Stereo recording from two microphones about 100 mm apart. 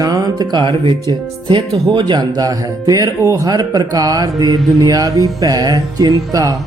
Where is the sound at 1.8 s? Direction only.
40° right (ahead or behind).